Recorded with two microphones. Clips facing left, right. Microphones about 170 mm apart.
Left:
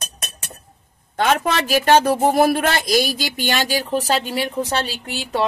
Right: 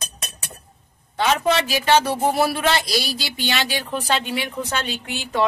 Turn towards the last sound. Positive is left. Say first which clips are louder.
# even
turn(degrees=35)  # may be behind; listen again after turning